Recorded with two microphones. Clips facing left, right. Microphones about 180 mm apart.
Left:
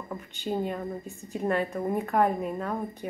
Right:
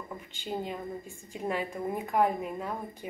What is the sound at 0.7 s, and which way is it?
Speech, 45° left (ahead or behind).